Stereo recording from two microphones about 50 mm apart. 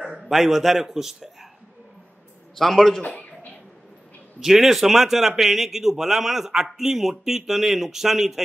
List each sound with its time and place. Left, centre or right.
0.0 s a man's voice: centre
2.5 s a man's voice: centre
3.0 s a sound: left
4.4 s a man's voice: centre